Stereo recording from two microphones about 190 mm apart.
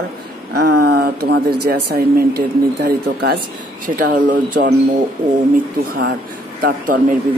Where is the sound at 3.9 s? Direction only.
45° right (ahead or behind).